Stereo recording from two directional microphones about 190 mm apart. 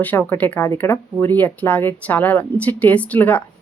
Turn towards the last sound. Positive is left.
turn(degrees=10)  # may be behind; listen again after turning